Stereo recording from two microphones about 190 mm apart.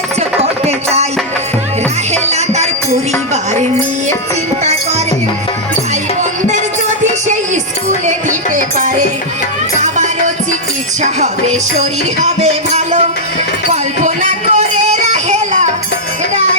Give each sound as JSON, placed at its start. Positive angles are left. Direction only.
{"t": 0.2, "sound": "music", "side_deg": -35}
{"t": 2.2, "sound": "music", "side_deg": -35}
{"t": 9.8, "sound": "music", "side_deg": -40}